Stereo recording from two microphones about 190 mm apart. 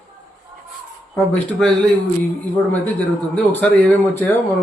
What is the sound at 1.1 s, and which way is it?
Speech, 5° left (ahead or behind).